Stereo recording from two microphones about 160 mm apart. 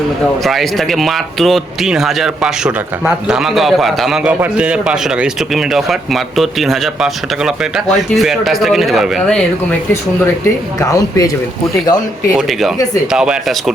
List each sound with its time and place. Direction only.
0.4 s speech: centre (ahead or behind)
10.8 s speech: 20° left (ahead or behind)
12.4 s speech: centre (ahead or behind)